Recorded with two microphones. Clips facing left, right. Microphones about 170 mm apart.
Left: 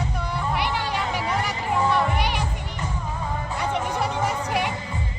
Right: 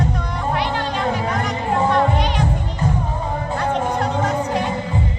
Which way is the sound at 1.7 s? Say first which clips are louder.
Right 4 dB; 90° right.